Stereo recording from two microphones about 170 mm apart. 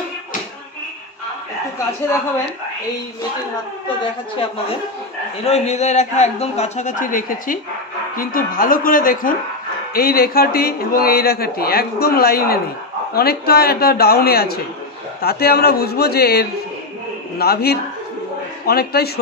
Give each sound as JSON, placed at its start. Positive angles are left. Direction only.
{"t": 4.0, "sound": "a woman's voice", "side_deg": 35}